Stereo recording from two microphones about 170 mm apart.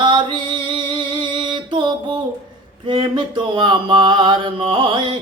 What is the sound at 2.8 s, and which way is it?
Mantra, 25° right (ahead or behind).